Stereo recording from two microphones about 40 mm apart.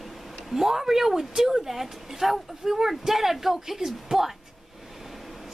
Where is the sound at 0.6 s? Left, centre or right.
Centre.